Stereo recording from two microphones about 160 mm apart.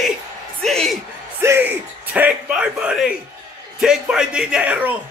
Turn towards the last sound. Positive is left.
turn(degrees=-10)  # may be behind; listen again after turning